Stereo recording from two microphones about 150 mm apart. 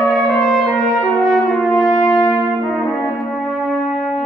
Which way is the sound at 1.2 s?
Centre (ahead or behind).